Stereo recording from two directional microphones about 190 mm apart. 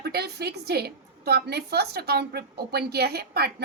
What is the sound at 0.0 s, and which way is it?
A woman's voice, 60° right (ahead or behind).